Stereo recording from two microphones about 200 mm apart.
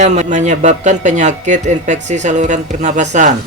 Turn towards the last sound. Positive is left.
turn(degrees=-35)  # may be behind; listen again after turning